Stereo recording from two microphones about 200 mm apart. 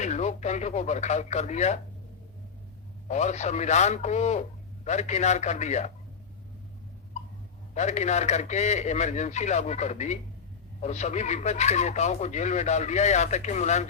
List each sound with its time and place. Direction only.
0.0 s speech: 35° left (ahead or behind)
3.1 s speech: 35° left (ahead or behind)
7.7 s speech: 35° left (ahead or behind)